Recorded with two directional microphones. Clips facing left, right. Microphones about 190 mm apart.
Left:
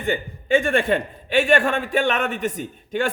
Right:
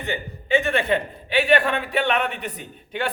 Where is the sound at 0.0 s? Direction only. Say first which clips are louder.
Left 5 dB; 50° left (ahead or behind).